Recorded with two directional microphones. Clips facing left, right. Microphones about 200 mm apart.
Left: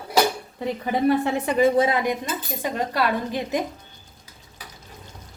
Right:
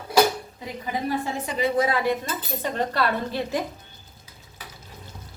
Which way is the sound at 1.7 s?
30° left (ahead or behind).